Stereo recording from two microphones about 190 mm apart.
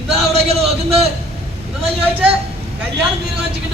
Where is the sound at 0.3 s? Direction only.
30° right (ahead or behind).